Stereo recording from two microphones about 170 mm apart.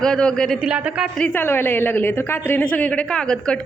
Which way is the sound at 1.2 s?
10° left (ahead or behind).